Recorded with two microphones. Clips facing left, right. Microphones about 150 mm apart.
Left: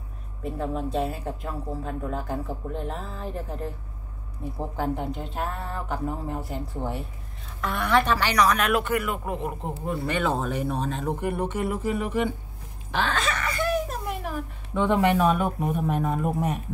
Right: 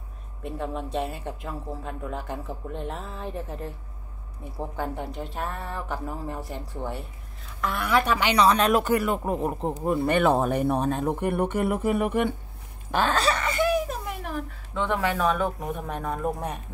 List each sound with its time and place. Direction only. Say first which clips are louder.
0.4 s speech: left 2 dB; centre (ahead or behind)
4.7 s speech: left 3 dB; centre (ahead or behind); by 9.7 s 35° right (ahead or behind)
9.8 s speech: right 5 dB; 55° right (ahead or behind)
12.9 s a sound: right 3 dB; 40° right (ahead or behind); by 13.7 s 25° right (ahead or behind)
14.7 s speech: left 5 dB; 15° left (ahead or behind)